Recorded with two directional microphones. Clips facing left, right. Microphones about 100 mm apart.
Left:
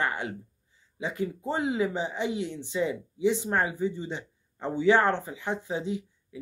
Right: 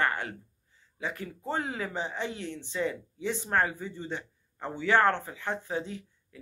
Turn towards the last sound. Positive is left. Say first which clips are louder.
# left 9 dB
turn(degrees=15)  # may be behind; listen again after turning